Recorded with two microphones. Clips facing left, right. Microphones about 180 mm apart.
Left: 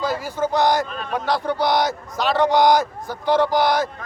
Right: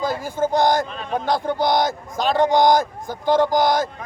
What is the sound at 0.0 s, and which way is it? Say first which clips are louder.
Speech: right 1 dB; 50° right (ahead or behind).